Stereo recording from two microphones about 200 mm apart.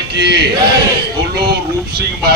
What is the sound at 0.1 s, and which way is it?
A man's voice, 55° right (ahead or behind).